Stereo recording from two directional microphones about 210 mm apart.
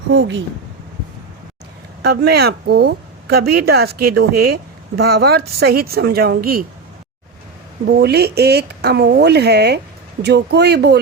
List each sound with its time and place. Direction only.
0.1 s speech: 65° right (ahead or behind)
2.0 s a woman's voice: 50° right (ahead or behind)
7.9 s a woman's voice: 50° right (ahead or behind)